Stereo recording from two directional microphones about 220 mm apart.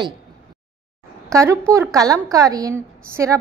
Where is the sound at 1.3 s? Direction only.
15° right (ahead or behind).